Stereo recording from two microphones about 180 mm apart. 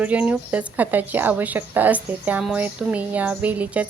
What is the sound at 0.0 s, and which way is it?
A woman's voice, 5° right (ahead or behind).